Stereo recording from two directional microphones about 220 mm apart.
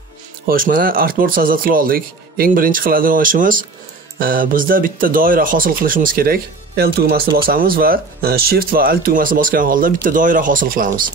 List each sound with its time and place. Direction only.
0.5 s speech: 40° right (ahead or behind)